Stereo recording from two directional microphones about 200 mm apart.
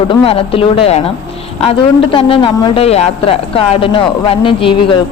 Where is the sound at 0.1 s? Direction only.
30° left (ahead or behind).